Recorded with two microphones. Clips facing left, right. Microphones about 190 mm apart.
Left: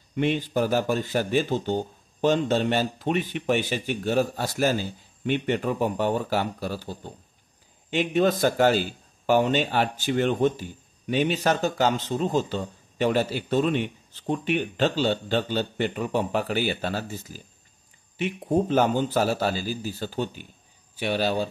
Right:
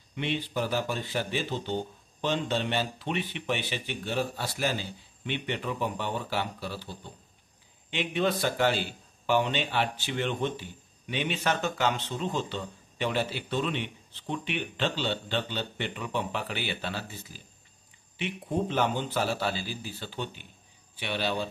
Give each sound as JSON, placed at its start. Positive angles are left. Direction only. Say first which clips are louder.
{"t": 0.1, "sound": "a man's voice", "louder": "left 7 dB", "side_deg": 45}